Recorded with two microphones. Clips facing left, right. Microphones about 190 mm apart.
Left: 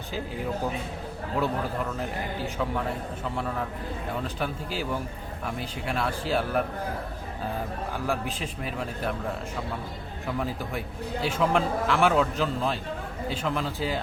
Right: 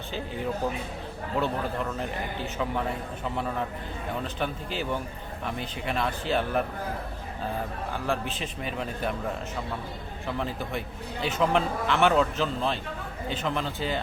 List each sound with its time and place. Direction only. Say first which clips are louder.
4.4 s a man's voice: even; 5° left (ahead or behind)
8.0 s a man's voice: even; 5° left (ahead or behind)
10.2 s a man's voice: left 1 dB; 10° left (ahead or behind)